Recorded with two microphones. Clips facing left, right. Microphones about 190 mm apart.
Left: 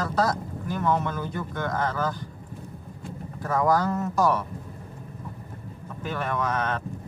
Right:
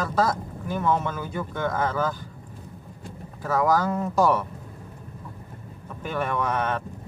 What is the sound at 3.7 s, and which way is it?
Speech, 10° right (ahead or behind).